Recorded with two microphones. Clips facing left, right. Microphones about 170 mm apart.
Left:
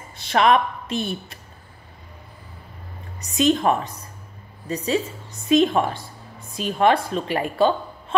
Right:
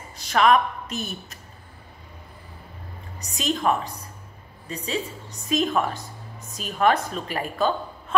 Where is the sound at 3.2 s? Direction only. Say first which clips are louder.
Left 8 dB; 35° right (ahead or behind).